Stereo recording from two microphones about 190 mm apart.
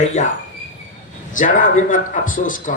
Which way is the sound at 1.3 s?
45° left (ahead or behind).